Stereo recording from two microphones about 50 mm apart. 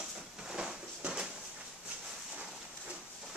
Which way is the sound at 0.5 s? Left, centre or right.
Centre.